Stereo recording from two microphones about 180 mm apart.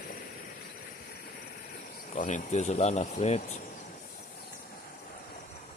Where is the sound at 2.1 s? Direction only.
45° left (ahead or behind).